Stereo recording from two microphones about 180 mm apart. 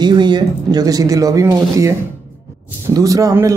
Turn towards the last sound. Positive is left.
turn(degrees=-20)  # may be behind; listen again after turning